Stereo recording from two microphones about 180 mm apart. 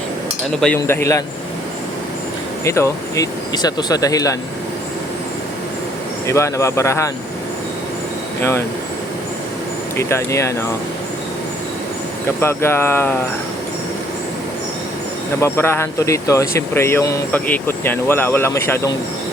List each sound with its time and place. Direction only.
0.8 s speech: 15° left (ahead or behind)
2.6 s speech: 15° left (ahead or behind)
6.2 s speech: 15° left (ahead or behind)
8.4 s speech: 15° left (ahead or behind)
10.0 s speech: 15° left (ahead or behind)
12.4 s speech: 15° left (ahead or behind)
15.4 s speech: 15° left (ahead or behind)